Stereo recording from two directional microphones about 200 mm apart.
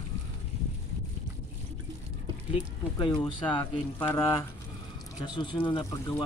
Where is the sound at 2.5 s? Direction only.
25° left (ahead or behind).